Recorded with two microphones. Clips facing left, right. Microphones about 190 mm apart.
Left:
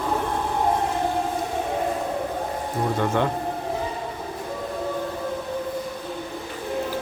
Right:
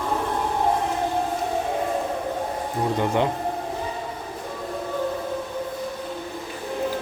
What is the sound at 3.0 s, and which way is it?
Speech, 15° right (ahead or behind).